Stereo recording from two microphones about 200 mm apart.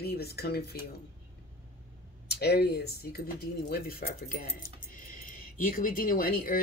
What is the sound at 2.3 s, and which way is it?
Speech, 55° left (ahead or behind).